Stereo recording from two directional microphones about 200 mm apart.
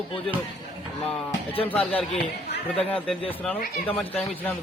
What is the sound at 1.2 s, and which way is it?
Speech, 30° left (ahead or behind).